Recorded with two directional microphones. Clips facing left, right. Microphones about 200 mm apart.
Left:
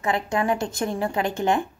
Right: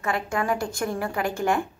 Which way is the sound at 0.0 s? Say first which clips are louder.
Left 3 dB; 20° left (ahead or behind).